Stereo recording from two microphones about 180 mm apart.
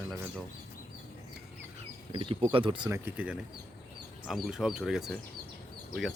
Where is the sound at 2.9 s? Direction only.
10° right (ahead or behind).